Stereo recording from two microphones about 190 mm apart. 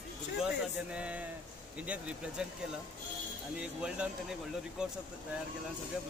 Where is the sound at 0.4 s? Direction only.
5° right (ahead or behind).